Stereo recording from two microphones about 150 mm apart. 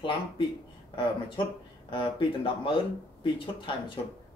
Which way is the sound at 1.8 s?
35° left (ahead or behind).